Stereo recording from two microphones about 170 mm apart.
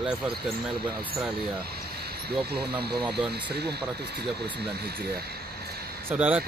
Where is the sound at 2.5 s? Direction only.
70° right (ahead or behind).